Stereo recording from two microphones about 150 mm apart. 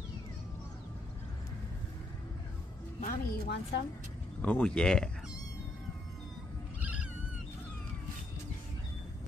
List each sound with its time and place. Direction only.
3.1 s a woman's voice: 90° left
4.4 s speech: 10° left (ahead or behind)
6.8 s cat: 10° right (ahead or behind)